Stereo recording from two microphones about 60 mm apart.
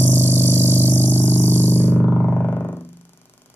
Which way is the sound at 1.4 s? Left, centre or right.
Right.